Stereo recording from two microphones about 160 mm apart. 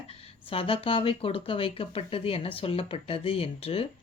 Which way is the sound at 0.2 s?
35° left (ahead or behind).